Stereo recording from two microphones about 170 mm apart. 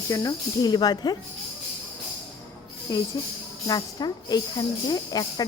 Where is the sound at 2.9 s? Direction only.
20° left (ahead or behind).